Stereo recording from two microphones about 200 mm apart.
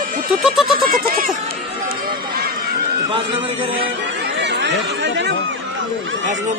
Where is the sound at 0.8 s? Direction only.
45° right (ahead or behind).